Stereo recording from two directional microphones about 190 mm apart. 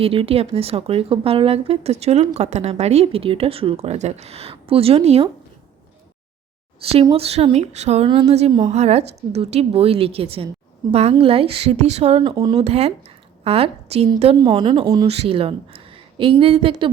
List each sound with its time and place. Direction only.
0.0 s speech: 30° right (ahead or behind)
6.9 s speech: 30° right (ahead or behind)
12.5 s speech: 35° right (ahead or behind)
14.3 s speech: 25° right (ahead or behind)
15.0 s speech: 35° right (ahead or behind)